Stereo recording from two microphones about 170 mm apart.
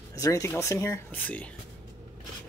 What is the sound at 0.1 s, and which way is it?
Speech, 20° left (ahead or behind).